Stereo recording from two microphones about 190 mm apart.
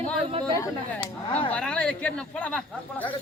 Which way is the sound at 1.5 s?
5° left (ahead or behind).